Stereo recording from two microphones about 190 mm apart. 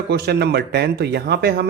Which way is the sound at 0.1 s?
60° right (ahead or behind).